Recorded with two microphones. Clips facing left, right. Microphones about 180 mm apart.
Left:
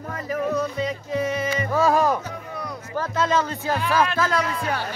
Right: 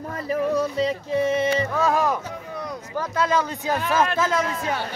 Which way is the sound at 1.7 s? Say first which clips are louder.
Left 2 dB; centre (ahead or behind).